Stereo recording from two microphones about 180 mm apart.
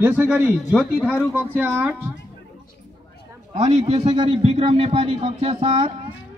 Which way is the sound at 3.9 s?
35° right (ahead or behind).